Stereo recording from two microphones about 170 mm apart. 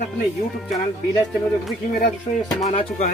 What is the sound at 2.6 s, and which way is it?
Speech, 40° left (ahead or behind).